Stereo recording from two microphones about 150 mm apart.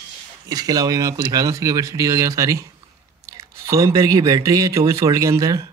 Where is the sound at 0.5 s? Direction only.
25° right (ahead or behind).